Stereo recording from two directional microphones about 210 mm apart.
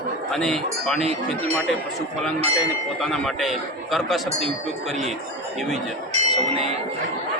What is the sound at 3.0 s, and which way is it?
Speech, centre (ahead or behind).